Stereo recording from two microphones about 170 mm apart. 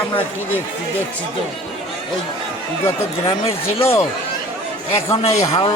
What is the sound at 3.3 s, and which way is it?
Speech, 35° left (ahead or behind).